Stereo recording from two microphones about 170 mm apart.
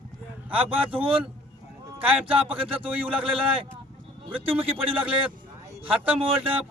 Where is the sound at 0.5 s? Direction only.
30° right (ahead or behind).